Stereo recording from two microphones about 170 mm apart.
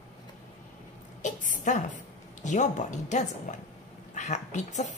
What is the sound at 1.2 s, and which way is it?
A woman's voice, 50° left (ahead or behind).